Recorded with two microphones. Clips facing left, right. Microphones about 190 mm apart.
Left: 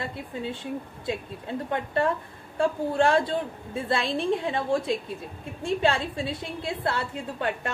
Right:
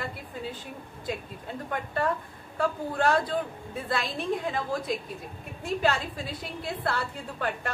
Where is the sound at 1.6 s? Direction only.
25° left (ahead or behind).